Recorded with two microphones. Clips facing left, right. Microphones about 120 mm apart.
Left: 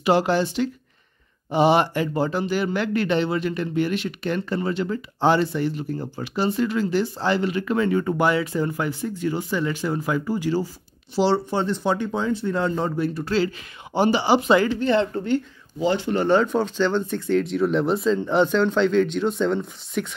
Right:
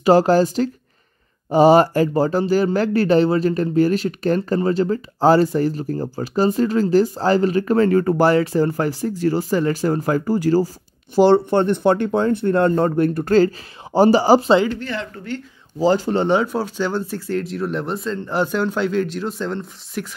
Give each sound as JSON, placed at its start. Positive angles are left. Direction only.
{"t": 0.0, "sound": "speech", "side_deg": -40}
{"t": 11.1, "sound": "speech", "side_deg": -55}
{"t": 14.8, "sound": "speech", "side_deg": 25}
{"t": 15.8, "sound": "speech", "side_deg": -40}
{"t": 16.3, "sound": "speech", "side_deg": -10}